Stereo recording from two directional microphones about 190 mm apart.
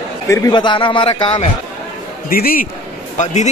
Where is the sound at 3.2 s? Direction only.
40° left (ahead or behind).